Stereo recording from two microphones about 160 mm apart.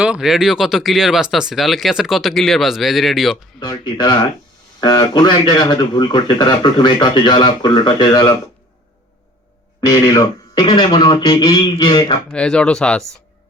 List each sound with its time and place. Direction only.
0.0 s speech: 5° right (ahead or behind)
3.6 s speech: 25° left (ahead or behind)
9.8 s speech: 25° left (ahead or behind)
12.3 s speech: 5° left (ahead or behind)